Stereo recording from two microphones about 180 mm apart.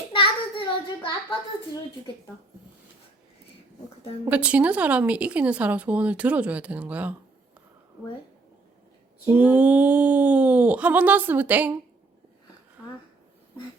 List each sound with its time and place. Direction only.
0.1 s child singing: 30° left (ahead or behind)
4.3 s speech: 10° right (ahead or behind)
9.2 s speech: 10° right (ahead or behind)